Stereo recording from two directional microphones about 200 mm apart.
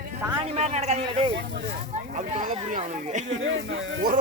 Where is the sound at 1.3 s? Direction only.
55° right (ahead or behind).